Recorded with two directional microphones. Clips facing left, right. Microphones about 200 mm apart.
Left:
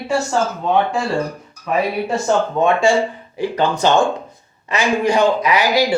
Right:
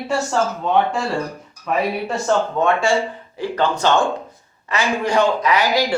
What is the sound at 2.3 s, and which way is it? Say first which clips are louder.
Speech: left 1 dB; 15° left (ahead or behind).